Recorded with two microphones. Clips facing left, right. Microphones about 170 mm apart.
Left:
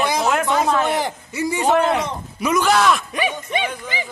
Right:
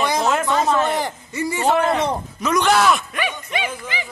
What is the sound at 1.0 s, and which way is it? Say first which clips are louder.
A man's voice: left 1 dB; 10° left (ahead or behind).